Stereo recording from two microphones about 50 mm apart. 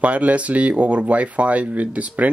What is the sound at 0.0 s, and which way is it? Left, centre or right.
Speech, right.